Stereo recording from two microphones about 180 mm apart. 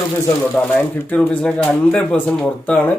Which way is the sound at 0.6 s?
5° left (ahead or behind).